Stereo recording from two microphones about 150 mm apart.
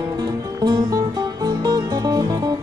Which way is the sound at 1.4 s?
25° right (ahead or behind).